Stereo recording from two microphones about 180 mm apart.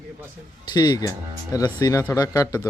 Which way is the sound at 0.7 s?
20° left (ahead or behind).